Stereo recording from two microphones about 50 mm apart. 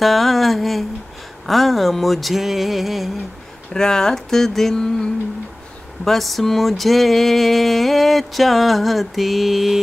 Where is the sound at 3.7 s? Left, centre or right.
Centre.